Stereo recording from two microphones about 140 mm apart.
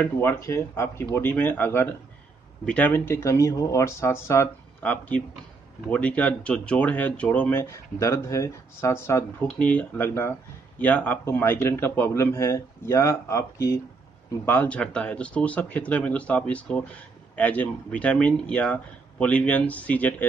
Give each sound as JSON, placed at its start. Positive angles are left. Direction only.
{"t": 0.0, "sound": "speech", "side_deg": 15}